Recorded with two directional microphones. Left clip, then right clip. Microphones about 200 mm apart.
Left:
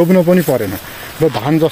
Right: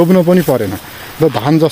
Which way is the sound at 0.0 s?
25° right (ahead or behind).